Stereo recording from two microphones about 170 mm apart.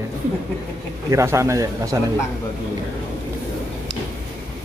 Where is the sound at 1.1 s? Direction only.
15° right (ahead or behind).